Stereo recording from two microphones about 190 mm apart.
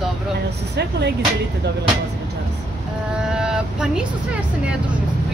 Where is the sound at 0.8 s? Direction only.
65° right (ahead or behind).